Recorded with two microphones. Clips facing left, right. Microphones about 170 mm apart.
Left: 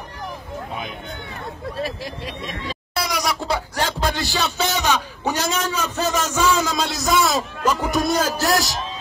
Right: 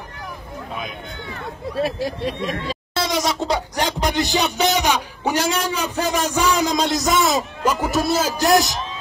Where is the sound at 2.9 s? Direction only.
25° right (ahead or behind).